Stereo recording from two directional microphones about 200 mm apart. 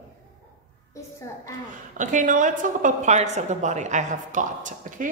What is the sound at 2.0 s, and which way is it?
A woman's voice, 40° right (ahead or behind).